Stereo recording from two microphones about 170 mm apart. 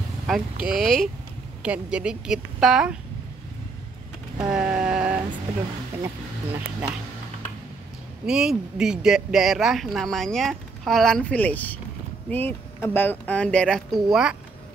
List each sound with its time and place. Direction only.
0.3 s speech: centre (ahead or behind)
4.5 s a sound: 5° right (ahead or behind)
6.0 s speech: 15° right (ahead or behind)
8.3 s speech: 5° right (ahead or behind)